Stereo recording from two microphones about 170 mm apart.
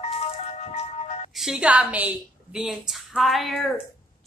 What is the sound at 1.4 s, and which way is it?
A woman's voice, 5° right (ahead or behind).